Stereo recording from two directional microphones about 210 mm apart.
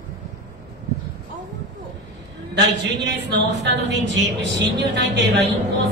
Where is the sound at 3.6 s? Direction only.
60° right (ahead or behind).